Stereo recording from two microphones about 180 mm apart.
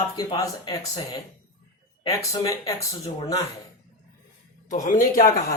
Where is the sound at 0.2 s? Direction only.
20° left (ahead or behind).